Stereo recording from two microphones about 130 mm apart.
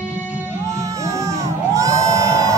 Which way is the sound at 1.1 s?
25° right (ahead or behind).